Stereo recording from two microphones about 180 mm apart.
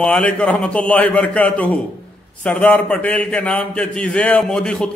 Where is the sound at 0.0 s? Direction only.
5° left (ahead or behind).